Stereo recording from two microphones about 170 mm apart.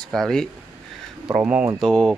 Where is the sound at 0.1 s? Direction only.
5° left (ahead or behind).